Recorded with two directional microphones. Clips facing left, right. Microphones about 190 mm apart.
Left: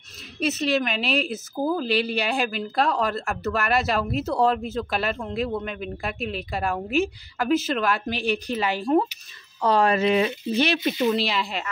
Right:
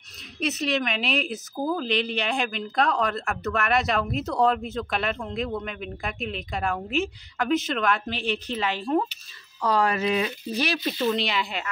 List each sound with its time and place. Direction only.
0.4 s a woman's voice: centre (ahead or behind)
9.6 s speech: 30° left (ahead or behind)
11.1 s a woman's voice: centre (ahead or behind)